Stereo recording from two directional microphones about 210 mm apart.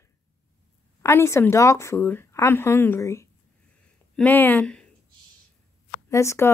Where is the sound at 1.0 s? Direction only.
10° left (ahead or behind).